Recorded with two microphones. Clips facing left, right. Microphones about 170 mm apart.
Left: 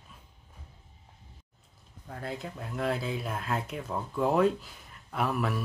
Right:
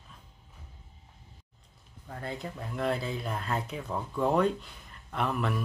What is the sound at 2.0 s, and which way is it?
Speech, centre (ahead or behind).